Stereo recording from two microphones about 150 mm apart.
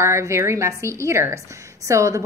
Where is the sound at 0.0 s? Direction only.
20° right (ahead or behind).